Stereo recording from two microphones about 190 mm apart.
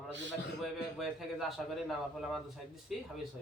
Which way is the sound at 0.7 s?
Centre (ahead or behind).